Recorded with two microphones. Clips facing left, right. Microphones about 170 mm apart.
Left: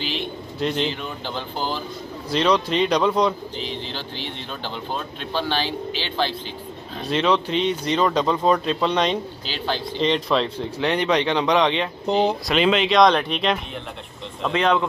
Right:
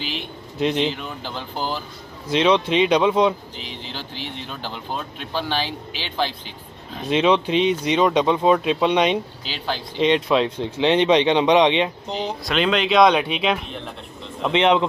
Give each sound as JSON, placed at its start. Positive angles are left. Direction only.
{"t": 0.6, "sound": "speech", "side_deg": -5}
{"t": 10.8, "sound": "speech", "side_deg": -20}
{"t": 12.1, "sound": "speech", "side_deg": 60}
{"t": 12.4, "sound": "speech", "side_deg": 0}
{"t": 14.4, "sound": "speech", "side_deg": -20}